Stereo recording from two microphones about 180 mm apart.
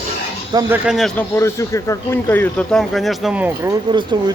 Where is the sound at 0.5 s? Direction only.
20° right (ahead or behind).